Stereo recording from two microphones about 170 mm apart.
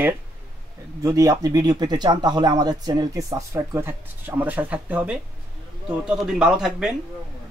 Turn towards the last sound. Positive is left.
turn(degrees=-5)  # may be behind; listen again after turning